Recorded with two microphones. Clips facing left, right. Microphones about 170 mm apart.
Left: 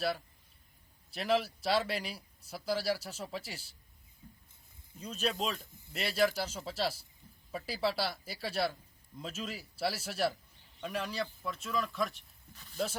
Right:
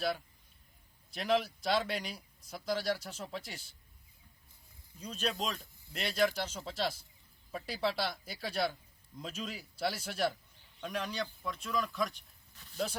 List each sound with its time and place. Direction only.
1.1 s speech: centre (ahead or behind)
4.2 s a sound: 40° left (ahead or behind)
4.9 s speech: 5° left (ahead or behind)